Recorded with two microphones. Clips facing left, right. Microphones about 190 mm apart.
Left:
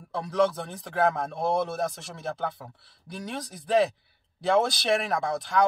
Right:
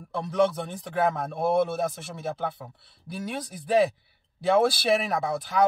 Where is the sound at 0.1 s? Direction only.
Centre (ahead or behind).